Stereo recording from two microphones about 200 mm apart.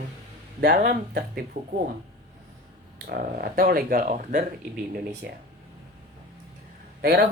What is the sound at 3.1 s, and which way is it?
Speech, 45° right (ahead or behind).